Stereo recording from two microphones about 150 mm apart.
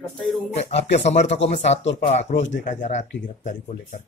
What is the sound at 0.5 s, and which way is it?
Speech, 45° left (ahead or behind).